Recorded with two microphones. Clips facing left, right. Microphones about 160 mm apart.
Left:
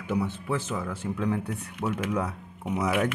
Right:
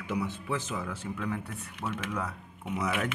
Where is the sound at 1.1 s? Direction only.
20° left (ahead or behind).